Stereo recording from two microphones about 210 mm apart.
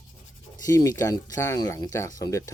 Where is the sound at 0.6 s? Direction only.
15° left (ahead or behind).